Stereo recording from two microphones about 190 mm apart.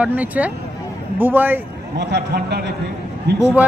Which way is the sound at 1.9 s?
60° right (ahead or behind).